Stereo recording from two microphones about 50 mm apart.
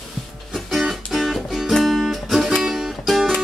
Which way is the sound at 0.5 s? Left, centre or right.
Centre.